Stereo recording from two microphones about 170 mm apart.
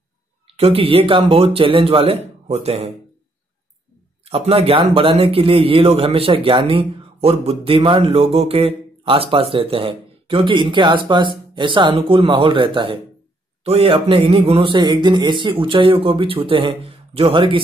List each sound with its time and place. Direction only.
0.5 s a man's voice: 35° right (ahead or behind)
4.2 s a man's voice: 35° right (ahead or behind)